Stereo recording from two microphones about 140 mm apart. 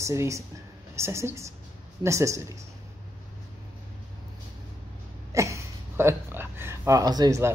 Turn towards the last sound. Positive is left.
turn(degrees=-25)  # may be behind; listen again after turning